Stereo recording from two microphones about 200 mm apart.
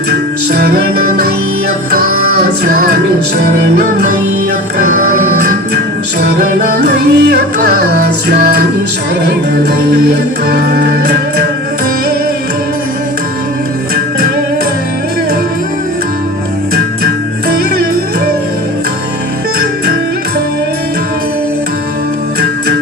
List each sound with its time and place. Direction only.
0.1 s music: 50° right (ahead or behind)
6.8 s music: 55° right (ahead or behind)
10.5 s music: 55° right (ahead or behind)